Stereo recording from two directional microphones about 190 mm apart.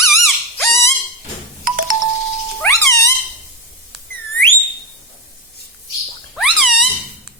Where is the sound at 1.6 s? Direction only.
45° right (ahead or behind).